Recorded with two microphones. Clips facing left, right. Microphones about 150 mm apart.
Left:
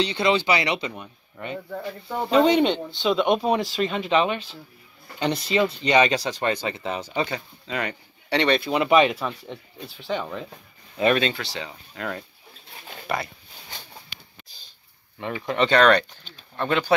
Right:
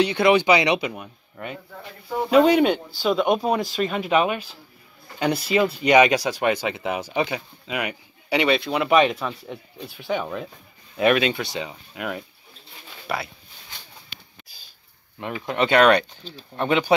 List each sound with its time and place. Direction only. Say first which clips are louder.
0.0 s speech: right 4 dB; 10° right (ahead or behind)
15.4 s speech: right 1 dB; 5° right (ahead or behind)